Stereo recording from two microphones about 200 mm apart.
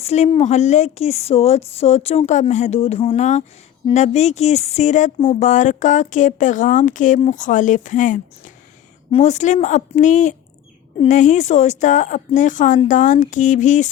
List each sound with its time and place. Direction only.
0.0 s speech: 35° left (ahead or behind)